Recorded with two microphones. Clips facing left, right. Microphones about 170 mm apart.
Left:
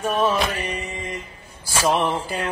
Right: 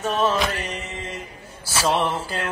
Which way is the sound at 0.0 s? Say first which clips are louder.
Left 1 dB; 10° left (ahead or behind).